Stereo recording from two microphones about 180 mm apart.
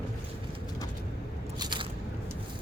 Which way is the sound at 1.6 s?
25° right (ahead or behind).